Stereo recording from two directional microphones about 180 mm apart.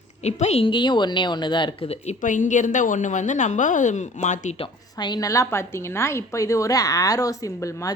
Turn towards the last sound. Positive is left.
turn(degrees=15)  # may be behind; listen again after turning